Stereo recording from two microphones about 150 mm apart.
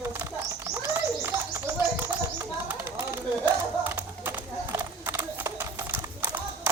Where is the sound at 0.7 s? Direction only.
20° right (ahead or behind).